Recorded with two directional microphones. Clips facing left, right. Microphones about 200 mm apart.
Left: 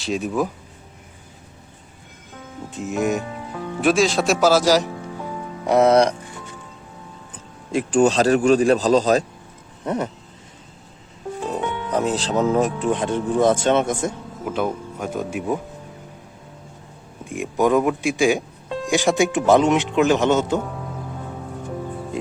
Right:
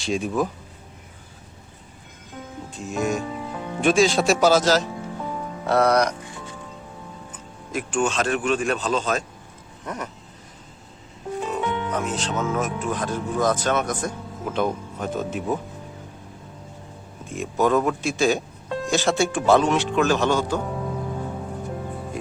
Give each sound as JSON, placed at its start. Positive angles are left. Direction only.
{"t": 0.0, "sound": "speech", "side_deg": 0}
{"t": 2.6, "sound": "music", "side_deg": 20}
{"t": 3.8, "sound": "speech", "side_deg": 0}
{"t": 7.7, "sound": "speech", "side_deg": 35}
{"t": 11.5, "sound": "speech", "side_deg": 35}
{"t": 14.4, "sound": "speech", "side_deg": 5}
{"t": 17.2, "sound": "speech", "side_deg": 15}